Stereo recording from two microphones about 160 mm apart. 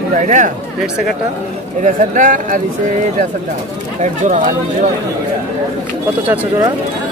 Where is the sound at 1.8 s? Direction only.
55° right (ahead or behind).